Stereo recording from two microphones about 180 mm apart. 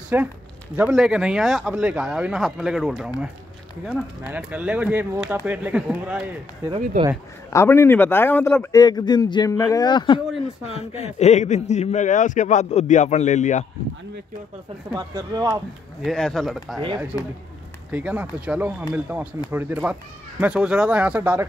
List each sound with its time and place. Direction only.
0.1 s speech: 10° right (ahead or behind)
7.0 s speech: 40° right (ahead or behind)
7.5 s a man's voice: 15° left (ahead or behind)
10.7 s speech: 35° left (ahead or behind)
15.0 s speech: 20° right (ahead or behind)
16.0 s speech: centre (ahead or behind)
17.1 s speech: 15° right (ahead or behind)